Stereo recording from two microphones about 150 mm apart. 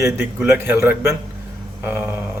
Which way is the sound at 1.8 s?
15° right (ahead or behind).